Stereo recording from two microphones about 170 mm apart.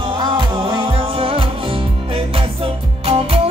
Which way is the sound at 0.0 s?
30° right (ahead or behind).